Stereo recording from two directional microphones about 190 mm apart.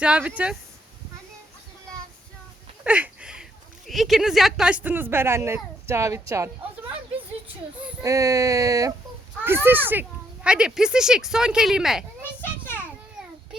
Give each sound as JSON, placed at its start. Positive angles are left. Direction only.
{"t": 0.0, "sound": "speech", "side_deg": -5}
{"t": 2.8, "sound": "a sound", "side_deg": -10}
{"t": 3.8, "sound": "speech", "side_deg": 0}
{"t": 8.0, "sound": "a child's voice", "side_deg": -15}
{"t": 12.4, "sound": "children playing", "side_deg": 10}